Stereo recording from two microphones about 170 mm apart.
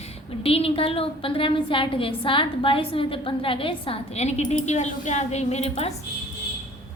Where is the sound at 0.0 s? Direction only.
35° left (ahead or behind).